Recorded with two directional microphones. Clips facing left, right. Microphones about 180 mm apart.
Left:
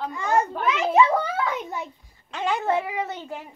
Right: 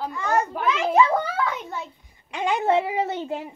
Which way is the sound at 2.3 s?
15° right (ahead or behind).